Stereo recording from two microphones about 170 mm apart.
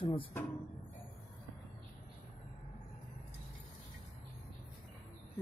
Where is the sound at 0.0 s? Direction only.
30° left (ahead or behind).